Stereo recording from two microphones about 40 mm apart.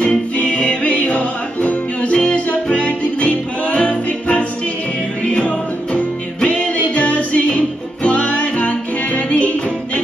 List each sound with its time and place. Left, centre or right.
0.4 s music: left